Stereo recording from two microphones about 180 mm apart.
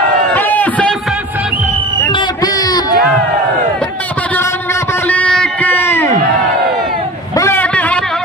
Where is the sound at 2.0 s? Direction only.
20° left (ahead or behind).